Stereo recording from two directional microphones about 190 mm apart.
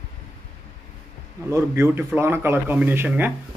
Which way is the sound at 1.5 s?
15° right (ahead or behind).